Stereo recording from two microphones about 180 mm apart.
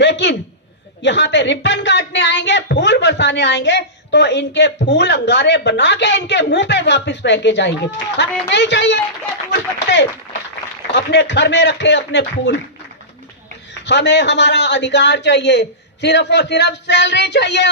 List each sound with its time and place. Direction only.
0.0 s a sound: 75° left (ahead or behind)
1.0 s a woman's voice: 75° left (ahead or behind)
13.8 s a woman's voice: 75° left (ahead or behind)